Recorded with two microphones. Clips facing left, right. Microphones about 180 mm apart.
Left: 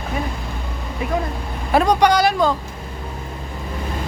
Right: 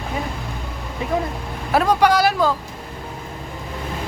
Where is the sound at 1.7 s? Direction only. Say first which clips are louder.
Left 1 dB; 5° right (ahead or behind).